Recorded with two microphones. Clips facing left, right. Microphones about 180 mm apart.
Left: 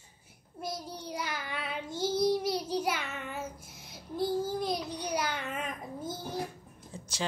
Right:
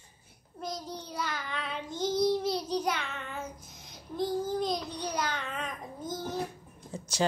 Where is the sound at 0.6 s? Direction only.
10° left (ahead or behind).